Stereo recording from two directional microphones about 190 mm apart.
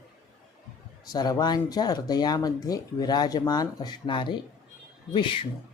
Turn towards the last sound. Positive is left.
turn(degrees=25)  # may be behind; listen again after turning